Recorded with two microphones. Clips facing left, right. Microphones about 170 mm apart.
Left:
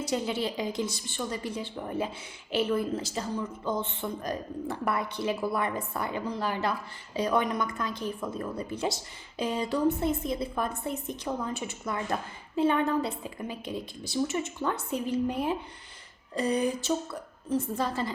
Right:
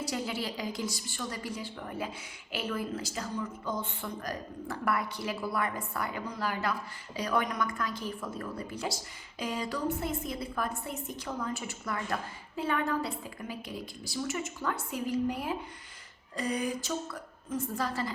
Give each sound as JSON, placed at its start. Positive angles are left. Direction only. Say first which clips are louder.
{"t": 0.0, "sound": "a woman's voice", "louder": "left 5 dB", "side_deg": 25}